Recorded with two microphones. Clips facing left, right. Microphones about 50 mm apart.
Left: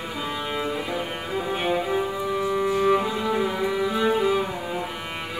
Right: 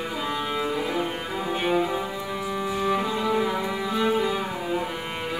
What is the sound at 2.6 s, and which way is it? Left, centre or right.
Music, centre.